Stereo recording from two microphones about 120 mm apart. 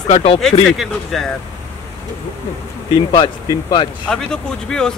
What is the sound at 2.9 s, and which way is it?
Speech, 40° left (ahead or behind).